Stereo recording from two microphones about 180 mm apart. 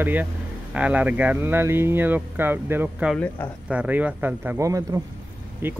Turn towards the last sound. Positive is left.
turn(degrees=-10)  # may be behind; listen again after turning